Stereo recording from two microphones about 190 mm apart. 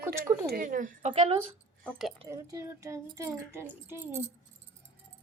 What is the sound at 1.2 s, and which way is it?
Speech, 30° right (ahead or behind).